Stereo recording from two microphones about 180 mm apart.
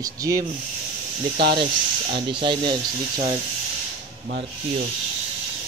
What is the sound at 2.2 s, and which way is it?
Speech, 30° right (ahead or behind).